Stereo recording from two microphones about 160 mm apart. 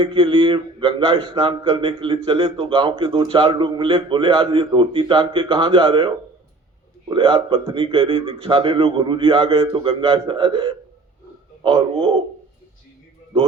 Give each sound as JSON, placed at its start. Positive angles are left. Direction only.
{"t": 0.0, "sound": "a man's voice", "side_deg": -35}
{"t": 7.1, "sound": "a man's voice", "side_deg": -35}